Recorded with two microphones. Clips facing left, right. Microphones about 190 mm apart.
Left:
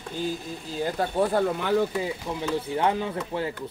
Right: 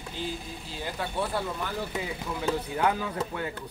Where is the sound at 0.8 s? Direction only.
45° left (ahead or behind).